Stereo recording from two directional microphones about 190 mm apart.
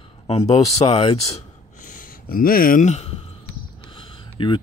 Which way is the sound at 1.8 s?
45° left (ahead or behind).